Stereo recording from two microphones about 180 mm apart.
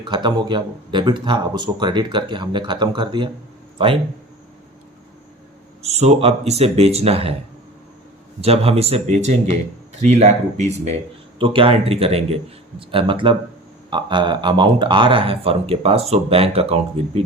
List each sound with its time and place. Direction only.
0.0 s speech: 25° right (ahead or behind)
5.8 s speech: 35° right (ahead or behind)
8.4 s speech: 35° right (ahead or behind)